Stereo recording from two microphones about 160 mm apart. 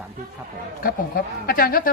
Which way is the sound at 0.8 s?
70° left (ahead or behind).